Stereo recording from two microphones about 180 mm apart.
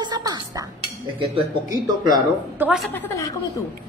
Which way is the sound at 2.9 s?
15° left (ahead or behind).